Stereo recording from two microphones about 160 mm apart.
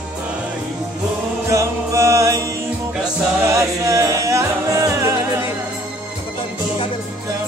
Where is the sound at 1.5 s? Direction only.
20° right (ahead or behind).